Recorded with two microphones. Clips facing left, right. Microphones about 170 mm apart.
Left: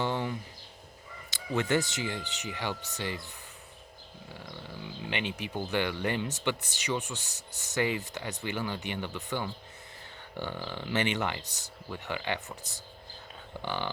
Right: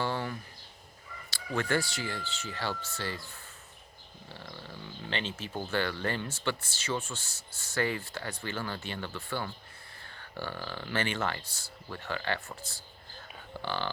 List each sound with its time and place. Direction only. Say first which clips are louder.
0.0 s a sound: left 2 dB; 20° left (ahead or behind)
1.3 s speech: left 2 dB; 20° left (ahead or behind)
5.0 s speech: left 2 dB; 15° left (ahead or behind)